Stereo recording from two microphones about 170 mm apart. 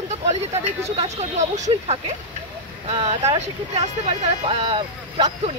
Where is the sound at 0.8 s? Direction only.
40° right (ahead or behind).